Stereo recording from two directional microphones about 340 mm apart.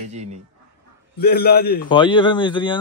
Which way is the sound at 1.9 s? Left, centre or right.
Centre.